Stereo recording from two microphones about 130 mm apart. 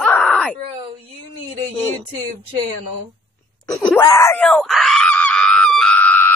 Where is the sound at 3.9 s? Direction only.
25° left (ahead or behind).